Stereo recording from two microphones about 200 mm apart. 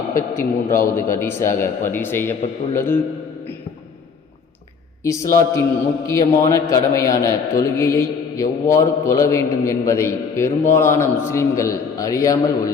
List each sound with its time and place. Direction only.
0.2 s a man's voice: 15° left (ahead or behind)
5.0 s a man's voice: 15° left (ahead or behind)